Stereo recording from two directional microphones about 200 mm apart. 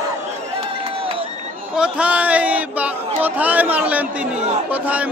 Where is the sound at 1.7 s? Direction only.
5° right (ahead or behind).